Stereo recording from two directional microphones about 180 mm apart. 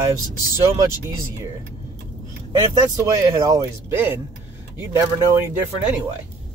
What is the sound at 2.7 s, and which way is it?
Speech, 20° right (ahead or behind).